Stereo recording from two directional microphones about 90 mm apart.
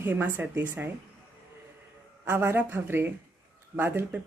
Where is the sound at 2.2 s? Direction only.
25° right (ahead or behind).